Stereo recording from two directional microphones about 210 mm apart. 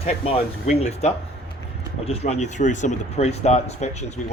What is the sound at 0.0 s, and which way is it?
Speech, 30° left (ahead or behind).